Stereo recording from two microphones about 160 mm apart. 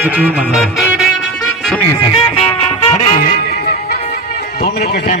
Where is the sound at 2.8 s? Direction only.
45° left (ahead or behind).